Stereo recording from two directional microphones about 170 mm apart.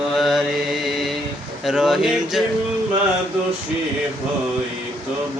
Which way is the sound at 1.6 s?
Centre (ahead or behind).